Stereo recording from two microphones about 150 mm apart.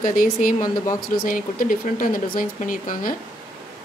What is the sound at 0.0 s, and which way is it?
Speech, 65° left (ahead or behind).